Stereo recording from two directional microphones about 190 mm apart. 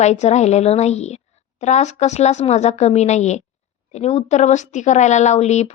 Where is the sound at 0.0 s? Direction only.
35° left (ahead or behind).